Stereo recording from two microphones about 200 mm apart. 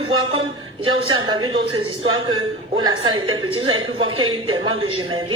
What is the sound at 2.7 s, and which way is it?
A woman's voice, 20° right (ahead or behind).